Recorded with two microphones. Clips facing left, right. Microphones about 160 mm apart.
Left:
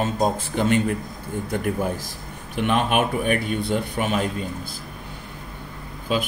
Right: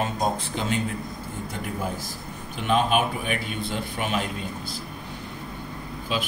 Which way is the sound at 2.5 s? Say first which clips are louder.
Left 1 dB; 65° left (ahead or behind).